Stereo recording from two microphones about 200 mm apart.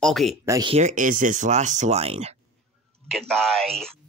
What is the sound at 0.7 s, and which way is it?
Speech, 35° right (ahead or behind).